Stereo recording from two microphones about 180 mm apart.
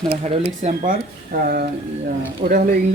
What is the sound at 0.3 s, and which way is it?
Speech, 40° right (ahead or behind).